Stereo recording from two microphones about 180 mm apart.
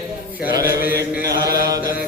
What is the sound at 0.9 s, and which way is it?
Chant, 20° right (ahead or behind).